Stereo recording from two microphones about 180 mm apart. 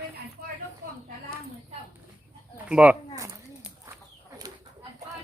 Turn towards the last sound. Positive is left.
turn(degrees=-10)  # may be behind; listen again after turning